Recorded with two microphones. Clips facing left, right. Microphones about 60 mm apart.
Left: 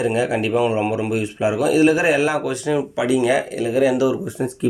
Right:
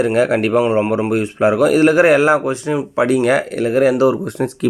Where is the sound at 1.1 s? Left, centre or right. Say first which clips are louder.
Right 5 dB; right.